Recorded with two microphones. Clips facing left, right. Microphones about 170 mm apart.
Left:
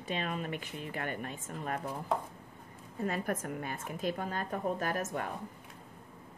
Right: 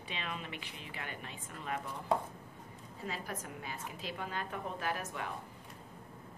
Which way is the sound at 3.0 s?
50° left (ahead or behind).